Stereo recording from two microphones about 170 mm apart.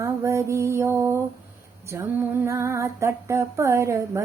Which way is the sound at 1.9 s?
15° right (ahead or behind).